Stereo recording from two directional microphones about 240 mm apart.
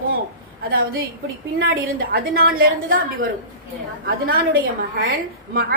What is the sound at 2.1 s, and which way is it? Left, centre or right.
A woman's voice, right.